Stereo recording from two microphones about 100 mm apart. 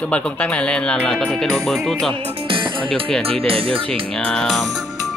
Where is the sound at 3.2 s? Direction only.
75° right (ahead or behind).